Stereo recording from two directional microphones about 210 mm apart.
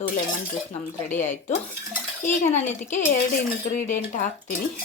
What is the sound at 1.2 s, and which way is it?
A woman's voice, 35° left (ahead or behind).